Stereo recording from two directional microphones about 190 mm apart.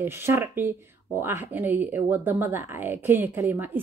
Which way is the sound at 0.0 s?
10° right (ahead or behind).